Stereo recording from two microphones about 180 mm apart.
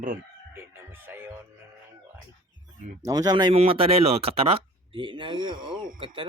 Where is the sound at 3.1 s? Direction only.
20° right (ahead or behind).